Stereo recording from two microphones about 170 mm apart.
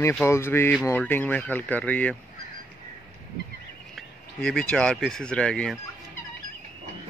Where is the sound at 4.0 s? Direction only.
5° left (ahead or behind).